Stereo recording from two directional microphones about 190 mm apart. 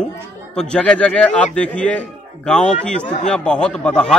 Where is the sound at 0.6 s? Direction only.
5° left (ahead or behind).